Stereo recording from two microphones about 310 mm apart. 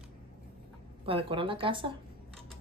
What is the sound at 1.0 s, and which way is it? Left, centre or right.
Speech, centre.